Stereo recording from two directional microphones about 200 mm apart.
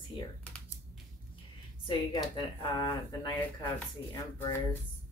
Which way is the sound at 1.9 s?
20° left (ahead or behind).